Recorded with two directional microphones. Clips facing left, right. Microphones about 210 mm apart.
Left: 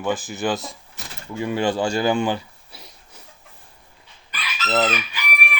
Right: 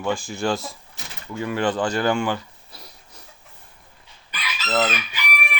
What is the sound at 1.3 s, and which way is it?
Speech, 15° left (ahead or behind).